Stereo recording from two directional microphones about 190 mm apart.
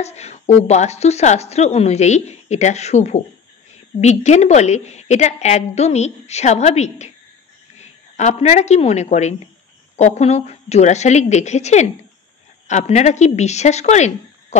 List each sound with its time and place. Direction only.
0.0 s a woman's voice: 35° left (ahead or behind)